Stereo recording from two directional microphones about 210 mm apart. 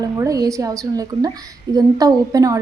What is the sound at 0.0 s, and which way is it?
A woman's voice, 15° right (ahead or behind).